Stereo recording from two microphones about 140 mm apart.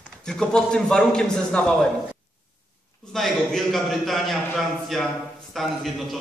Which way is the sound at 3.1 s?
Centre (ahead or behind).